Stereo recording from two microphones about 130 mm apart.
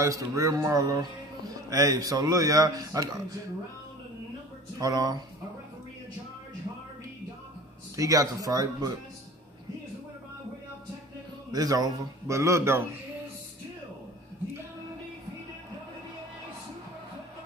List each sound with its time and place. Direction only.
0.0 s a man's voice: 25° right (ahead or behind)
4.7 s a man's voice: 30° right (ahead or behind)
7.9 s a man's voice: 25° right (ahead or behind)
11.5 s a man's voice: 30° right (ahead or behind)